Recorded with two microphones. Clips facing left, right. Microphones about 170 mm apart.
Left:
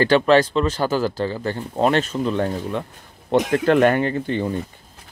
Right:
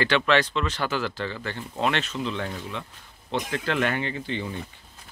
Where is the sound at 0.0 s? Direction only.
40° left (ahead or behind).